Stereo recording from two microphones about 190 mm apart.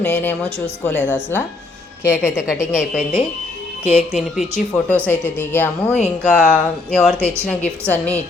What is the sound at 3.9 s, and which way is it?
Speech, 35° left (ahead or behind).